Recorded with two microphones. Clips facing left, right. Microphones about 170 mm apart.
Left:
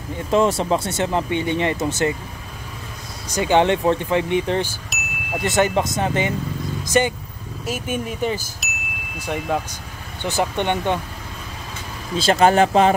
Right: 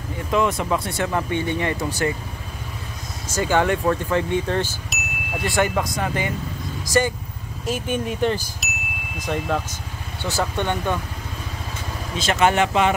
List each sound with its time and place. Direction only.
0.3 s speech: 30° left (ahead or behind)
3.3 s speech: 20° left (ahead or behind)
4.8 s chime: centre (ahead or behind)
5.4 s speech: 20° left (ahead or behind)
7.6 s speech: 5° left (ahead or behind)
8.6 s chime: centre (ahead or behind)
9.2 s speech: 10° left (ahead or behind)
12.2 s speech: 35° left (ahead or behind)